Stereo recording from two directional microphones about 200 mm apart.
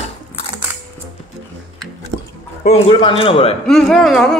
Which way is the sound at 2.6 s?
30° left (ahead or behind).